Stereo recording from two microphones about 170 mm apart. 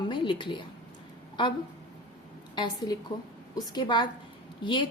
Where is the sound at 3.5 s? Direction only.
20° left (ahead or behind).